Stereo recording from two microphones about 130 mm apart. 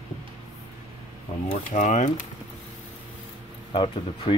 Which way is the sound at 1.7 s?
75° left (ahead or behind).